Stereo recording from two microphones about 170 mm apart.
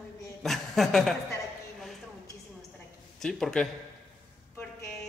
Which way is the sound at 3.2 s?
5° left (ahead or behind).